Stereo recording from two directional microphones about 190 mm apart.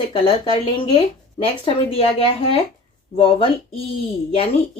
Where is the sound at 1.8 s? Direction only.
30° left (ahead or behind).